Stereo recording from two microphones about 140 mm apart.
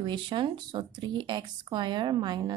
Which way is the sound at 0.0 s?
35° right (ahead or behind).